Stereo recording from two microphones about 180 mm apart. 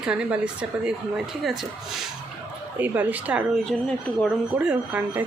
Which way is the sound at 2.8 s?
10° right (ahead or behind).